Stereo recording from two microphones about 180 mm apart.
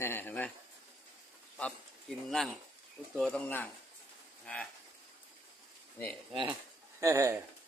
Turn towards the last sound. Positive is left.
turn(degrees=-15)  # may be behind; listen again after turning